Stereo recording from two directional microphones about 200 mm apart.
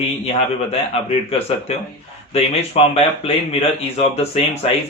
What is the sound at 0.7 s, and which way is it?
Speech, 30° left (ahead or behind).